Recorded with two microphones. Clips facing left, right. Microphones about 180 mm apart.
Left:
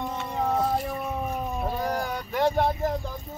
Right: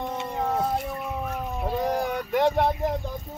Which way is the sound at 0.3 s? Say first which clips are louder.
Left 1 dB; centre (ahead or behind).